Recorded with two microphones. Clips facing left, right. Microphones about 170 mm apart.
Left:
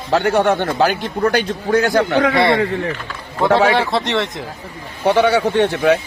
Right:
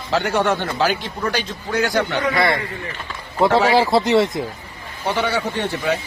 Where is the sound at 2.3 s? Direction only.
30° left (ahead or behind).